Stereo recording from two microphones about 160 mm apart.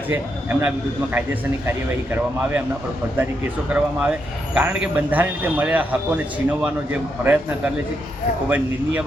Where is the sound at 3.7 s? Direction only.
5° right (ahead or behind).